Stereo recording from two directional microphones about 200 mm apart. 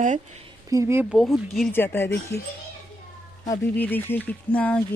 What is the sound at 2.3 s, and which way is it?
Speech, 55° left (ahead or behind).